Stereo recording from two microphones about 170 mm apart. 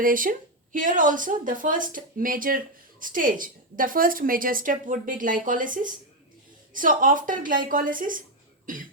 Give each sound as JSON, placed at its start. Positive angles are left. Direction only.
{"t": 0.0, "sound": "a woman's voice", "side_deg": -55}
{"t": 8.6, "sound": "cough", "side_deg": -50}